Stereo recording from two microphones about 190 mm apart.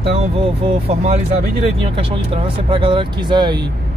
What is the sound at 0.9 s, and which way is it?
Speech, 35° right (ahead or behind).